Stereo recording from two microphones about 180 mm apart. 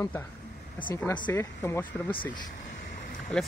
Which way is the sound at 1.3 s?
15° left (ahead or behind).